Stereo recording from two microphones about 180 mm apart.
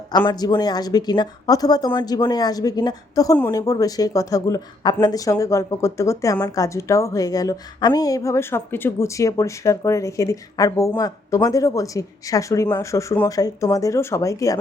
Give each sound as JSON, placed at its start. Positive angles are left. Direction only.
{"t": 0.3, "sound": "speech", "side_deg": 25}
{"t": 3.3, "sound": "speech", "side_deg": 10}